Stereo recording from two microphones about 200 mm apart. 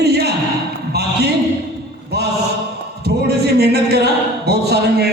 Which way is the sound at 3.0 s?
55° right (ahead or behind).